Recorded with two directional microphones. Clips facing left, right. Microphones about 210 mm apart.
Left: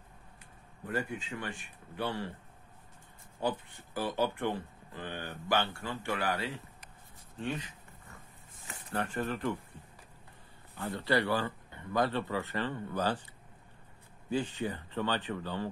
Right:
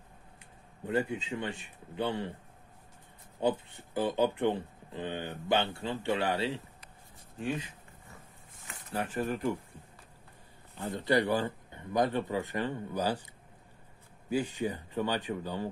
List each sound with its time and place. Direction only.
0.8 s speech: 20° right (ahead or behind)
3.3 s speech: 20° right (ahead or behind)
8.9 s speech: 5° right (ahead or behind)
10.8 s speech: 15° right (ahead or behind)
14.3 s speech: 10° right (ahead or behind)